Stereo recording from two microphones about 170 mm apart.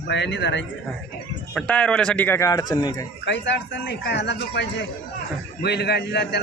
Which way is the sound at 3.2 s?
90° left.